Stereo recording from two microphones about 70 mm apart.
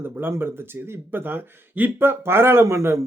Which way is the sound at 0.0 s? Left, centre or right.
Right.